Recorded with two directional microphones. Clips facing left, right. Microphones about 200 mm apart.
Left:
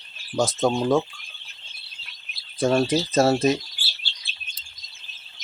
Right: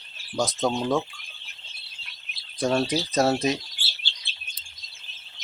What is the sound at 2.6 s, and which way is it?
Speech, 5° left (ahead or behind).